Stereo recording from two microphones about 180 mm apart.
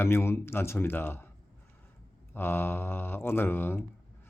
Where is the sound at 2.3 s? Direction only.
10° left (ahead or behind).